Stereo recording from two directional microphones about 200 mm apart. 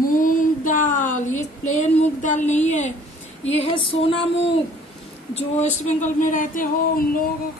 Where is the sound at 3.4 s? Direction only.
30° left (ahead or behind).